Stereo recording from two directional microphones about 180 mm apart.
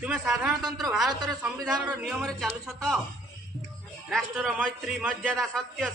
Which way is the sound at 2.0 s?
5° right (ahead or behind).